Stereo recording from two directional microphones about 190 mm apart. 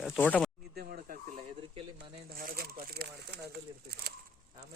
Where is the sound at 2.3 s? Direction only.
50° right (ahead or behind).